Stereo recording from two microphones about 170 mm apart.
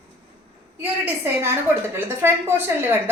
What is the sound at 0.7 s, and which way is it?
A woman's voice, 10° right (ahead or behind).